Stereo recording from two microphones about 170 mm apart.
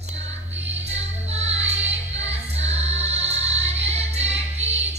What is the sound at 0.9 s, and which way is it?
Music, 40° right (ahead or behind).